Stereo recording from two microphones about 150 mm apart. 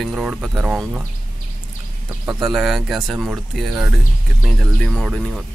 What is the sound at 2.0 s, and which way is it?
Speech, 20° right (ahead or behind).